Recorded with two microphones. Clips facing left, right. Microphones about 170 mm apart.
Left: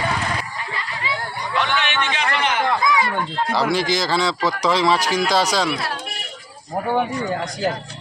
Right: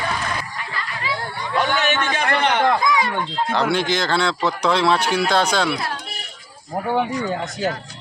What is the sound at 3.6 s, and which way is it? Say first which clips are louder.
Speech: even; centre (ahead or behind).